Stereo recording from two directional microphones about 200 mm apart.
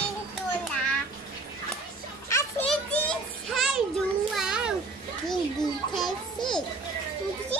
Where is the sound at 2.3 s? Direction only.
10° left (ahead or behind).